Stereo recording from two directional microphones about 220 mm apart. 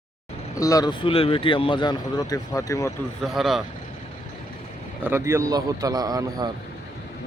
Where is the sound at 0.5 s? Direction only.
15° left (ahead or behind).